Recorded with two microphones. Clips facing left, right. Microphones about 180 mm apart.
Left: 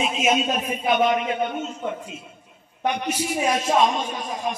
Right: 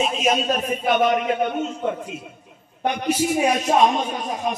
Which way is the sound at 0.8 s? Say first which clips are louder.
Right 1 dB; 45° right (ahead or behind).